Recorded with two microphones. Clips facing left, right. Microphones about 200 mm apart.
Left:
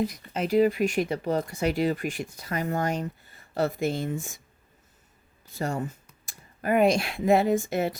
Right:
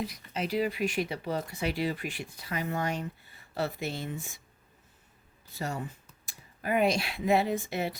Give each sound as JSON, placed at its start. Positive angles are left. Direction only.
{"t": 0.0, "sound": "speech", "side_deg": 45}
{"t": 5.5, "sound": "speech", "side_deg": 45}